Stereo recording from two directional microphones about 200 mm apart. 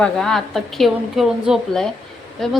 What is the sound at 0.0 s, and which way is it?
A woman's voice, centre (ahead or behind).